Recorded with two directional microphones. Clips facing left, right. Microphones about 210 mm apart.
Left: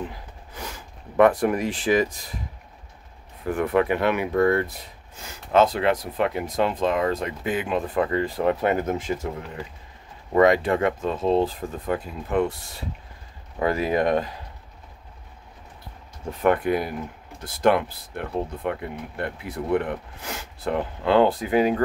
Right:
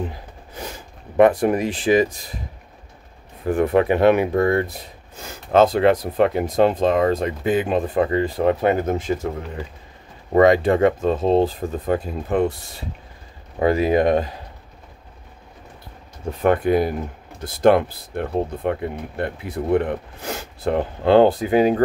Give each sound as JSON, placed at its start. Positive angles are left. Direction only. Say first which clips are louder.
{"t": 0.6, "sound": "speech", "louder": "right 4 dB", "side_deg": -25}
{"t": 3.4, "sound": "speech", "louder": "right 4 dB", "side_deg": -30}
{"t": 5.2, "sound": "speech", "louder": "right 4 dB", "side_deg": -40}
{"t": 10.3, "sound": "speech", "louder": "right 4 dB", "side_deg": -30}
{"t": 13.6, "sound": "speech", "louder": "right 5 dB", "side_deg": -25}
{"t": 16.4, "sound": "speech", "louder": "right 4 dB", "side_deg": -30}